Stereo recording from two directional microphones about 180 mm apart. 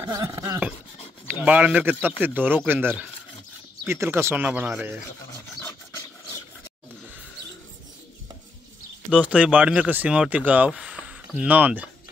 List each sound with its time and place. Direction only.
0.0 s a sound: 20° right (ahead or behind)
1.3 s speech: 10° right (ahead or behind)
9.1 s speech: 5° right (ahead or behind)